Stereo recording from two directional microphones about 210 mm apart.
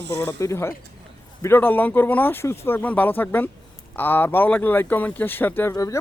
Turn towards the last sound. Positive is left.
turn(degrees=15)  # may be behind; listen again after turning